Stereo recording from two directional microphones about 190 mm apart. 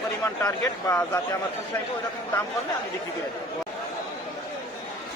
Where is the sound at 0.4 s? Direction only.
15° left (ahead or behind).